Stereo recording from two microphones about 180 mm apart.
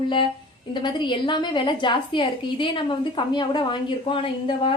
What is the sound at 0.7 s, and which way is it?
A woman's voice, 25° left (ahead or behind).